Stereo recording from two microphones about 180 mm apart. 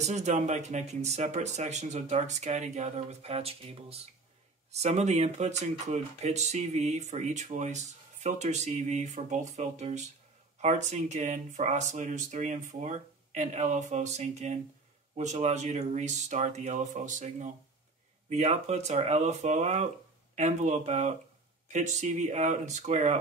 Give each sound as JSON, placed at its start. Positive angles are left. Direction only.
{"t": 0.0, "sound": "speech", "side_deg": -40}